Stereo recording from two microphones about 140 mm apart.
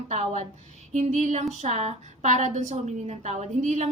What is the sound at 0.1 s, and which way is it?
A woman's voice, 50° right (ahead or behind).